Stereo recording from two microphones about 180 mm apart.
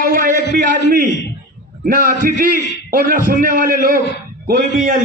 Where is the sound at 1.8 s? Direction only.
45° right (ahead or behind).